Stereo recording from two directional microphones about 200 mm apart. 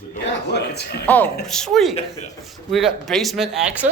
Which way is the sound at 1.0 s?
10° left (ahead or behind).